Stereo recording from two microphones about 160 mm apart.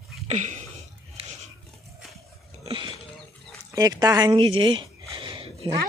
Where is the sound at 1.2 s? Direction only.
35° right (ahead or behind).